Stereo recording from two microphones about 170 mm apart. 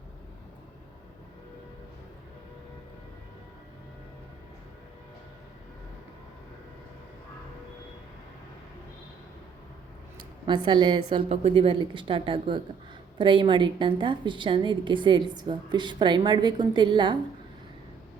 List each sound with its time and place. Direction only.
10.2 s a woman's voice: 25° right (ahead or behind)